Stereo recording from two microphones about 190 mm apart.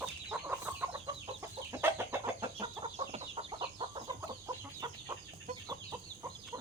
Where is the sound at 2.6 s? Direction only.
30° right (ahead or behind).